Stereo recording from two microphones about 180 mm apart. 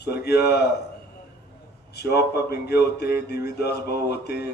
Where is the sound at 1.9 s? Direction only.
60° left (ahead or behind).